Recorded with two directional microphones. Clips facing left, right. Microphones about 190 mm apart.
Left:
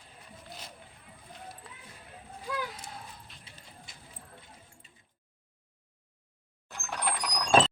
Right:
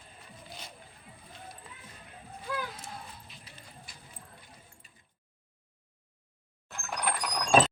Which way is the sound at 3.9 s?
20° left (ahead or behind).